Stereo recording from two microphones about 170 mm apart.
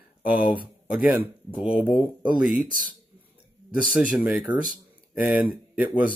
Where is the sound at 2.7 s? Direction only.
55° right (ahead or behind).